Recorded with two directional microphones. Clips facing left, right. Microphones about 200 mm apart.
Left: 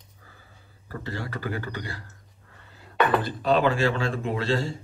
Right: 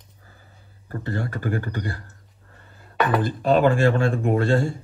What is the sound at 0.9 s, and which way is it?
Speech, 50° right (ahead or behind).